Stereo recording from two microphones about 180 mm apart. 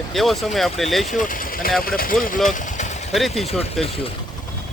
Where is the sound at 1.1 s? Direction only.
50° left (ahead or behind).